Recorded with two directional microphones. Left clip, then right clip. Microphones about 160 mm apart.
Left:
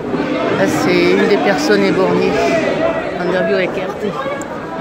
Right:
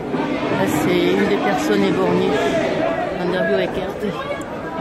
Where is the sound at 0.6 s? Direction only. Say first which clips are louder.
Left 4 dB; centre (ahead or behind).